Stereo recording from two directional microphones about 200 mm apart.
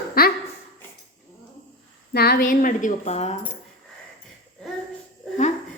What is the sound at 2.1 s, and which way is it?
Speech, 50° left (ahead or behind).